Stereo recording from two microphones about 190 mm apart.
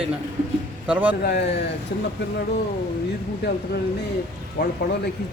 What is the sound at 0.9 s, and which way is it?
Speech, 10° right (ahead or behind).